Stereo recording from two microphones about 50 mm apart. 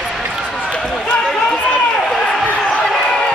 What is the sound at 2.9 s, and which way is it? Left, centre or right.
Run, centre.